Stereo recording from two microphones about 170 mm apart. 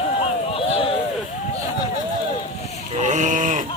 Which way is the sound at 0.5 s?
30° left (ahead or behind).